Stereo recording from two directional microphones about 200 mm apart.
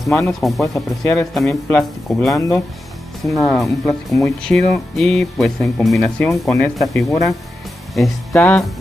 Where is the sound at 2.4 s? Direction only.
15° left (ahead or behind).